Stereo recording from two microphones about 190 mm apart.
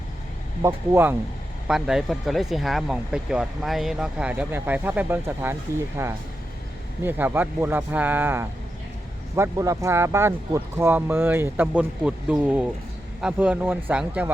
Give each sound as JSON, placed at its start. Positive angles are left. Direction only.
{"t": 0.6, "sound": "speech", "side_deg": -10}